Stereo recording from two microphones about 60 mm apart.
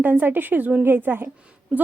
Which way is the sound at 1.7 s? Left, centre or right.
Right.